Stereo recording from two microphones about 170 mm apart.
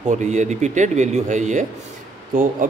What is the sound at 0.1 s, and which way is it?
Speech, 45° right (ahead or behind).